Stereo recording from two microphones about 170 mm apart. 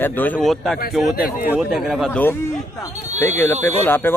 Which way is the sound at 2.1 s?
10° left (ahead or behind).